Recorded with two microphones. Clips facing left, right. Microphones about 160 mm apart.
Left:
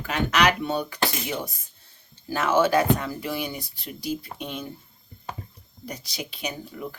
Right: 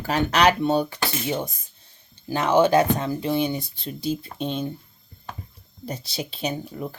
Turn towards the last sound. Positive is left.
turn(degrees=-30)  # may be behind; listen again after turning